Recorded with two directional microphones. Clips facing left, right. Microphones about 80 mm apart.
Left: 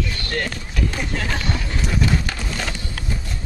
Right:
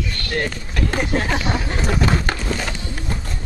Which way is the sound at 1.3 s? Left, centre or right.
Centre.